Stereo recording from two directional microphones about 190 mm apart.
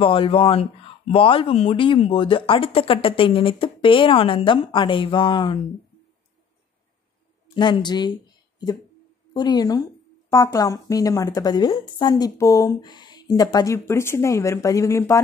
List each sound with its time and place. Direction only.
0.0 s speech: 30° left (ahead or behind)
7.5 s speech: 25° left (ahead or behind)
9.3 s a woman's voice: 20° left (ahead or behind)